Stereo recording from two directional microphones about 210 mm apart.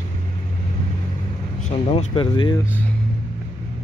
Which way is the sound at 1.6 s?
30° left (ahead or behind).